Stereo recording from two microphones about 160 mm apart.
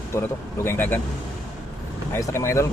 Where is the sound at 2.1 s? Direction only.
15° left (ahead or behind).